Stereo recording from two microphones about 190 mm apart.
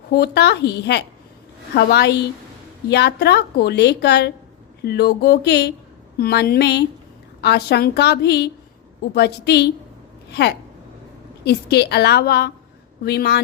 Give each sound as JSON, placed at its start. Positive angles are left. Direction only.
{"t": 0.1, "sound": "a woman's voice", "side_deg": 60}
{"t": 11.4, "sound": "a woman's voice", "side_deg": 60}